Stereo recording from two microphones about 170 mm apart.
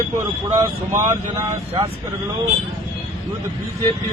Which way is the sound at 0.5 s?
20° right (ahead or behind).